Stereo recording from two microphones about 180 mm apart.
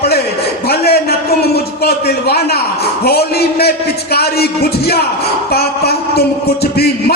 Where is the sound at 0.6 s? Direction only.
60° left (ahead or behind).